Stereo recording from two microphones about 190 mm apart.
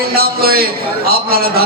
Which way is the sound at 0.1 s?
55° right (ahead or behind).